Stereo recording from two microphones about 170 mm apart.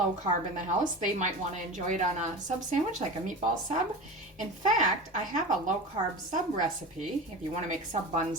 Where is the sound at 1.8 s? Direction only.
50° right (ahead or behind).